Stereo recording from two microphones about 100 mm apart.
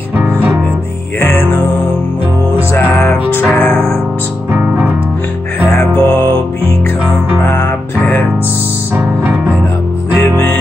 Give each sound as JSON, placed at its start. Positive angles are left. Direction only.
{"t": 0.2, "sound": "music", "side_deg": -15}
{"t": 1.2, "sound": "music", "side_deg": 20}
{"t": 2.7, "sound": "music", "side_deg": 20}
{"t": 4.5, "sound": "music", "side_deg": -15}
{"t": 5.7, "sound": "music", "side_deg": 25}
{"t": 8.0, "sound": "music", "side_deg": 20}
{"t": 10.1, "sound": "music", "side_deg": 20}